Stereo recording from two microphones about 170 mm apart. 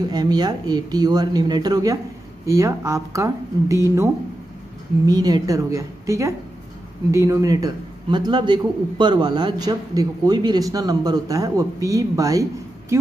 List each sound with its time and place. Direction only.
0.1 s a man's voice: 25° right (ahead or behind)